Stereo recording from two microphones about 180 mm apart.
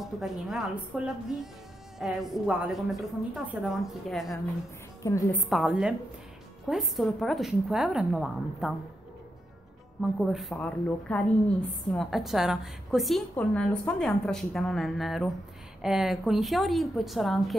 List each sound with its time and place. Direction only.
0.0 s a woman's voice: centre (ahead or behind)
5.0 s a woman's voice: 15° left (ahead or behind)
5.5 s a woman's voice: centre (ahead or behind)
10.0 s a woman's voice: centre (ahead or behind)